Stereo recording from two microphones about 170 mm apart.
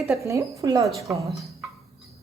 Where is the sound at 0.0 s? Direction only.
15° right (ahead or behind).